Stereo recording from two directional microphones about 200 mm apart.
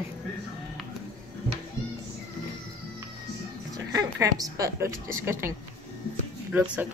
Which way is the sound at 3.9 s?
15° right (ahead or behind).